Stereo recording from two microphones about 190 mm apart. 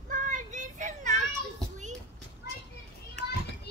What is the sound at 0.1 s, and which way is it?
Child singing, 40° right (ahead or behind).